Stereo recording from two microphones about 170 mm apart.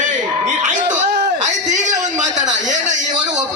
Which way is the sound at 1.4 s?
45° right (ahead or behind).